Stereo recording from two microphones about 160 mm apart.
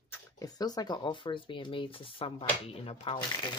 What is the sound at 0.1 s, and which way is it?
Speech, 25° left (ahead or behind).